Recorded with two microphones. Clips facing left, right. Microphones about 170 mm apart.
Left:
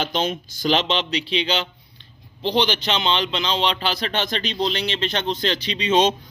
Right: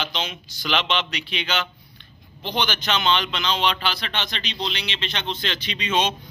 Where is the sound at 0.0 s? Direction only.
45° left (ahead or behind).